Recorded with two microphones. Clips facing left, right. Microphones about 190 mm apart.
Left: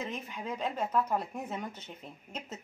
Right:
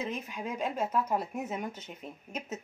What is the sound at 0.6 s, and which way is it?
Speech, 10° right (ahead or behind).